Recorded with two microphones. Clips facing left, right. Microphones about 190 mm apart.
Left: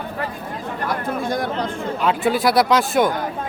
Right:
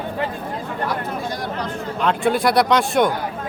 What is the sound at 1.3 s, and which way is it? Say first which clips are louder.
Chatter: left 4 dB; 50° left (ahead or behind).